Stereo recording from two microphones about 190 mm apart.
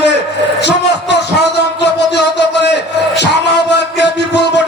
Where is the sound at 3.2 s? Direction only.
65° left (ahead or behind).